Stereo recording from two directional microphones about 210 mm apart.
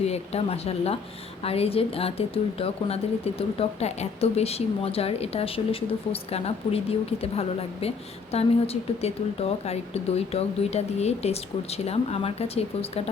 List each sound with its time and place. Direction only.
0.0 s a woman's voice: 30° left (ahead or behind)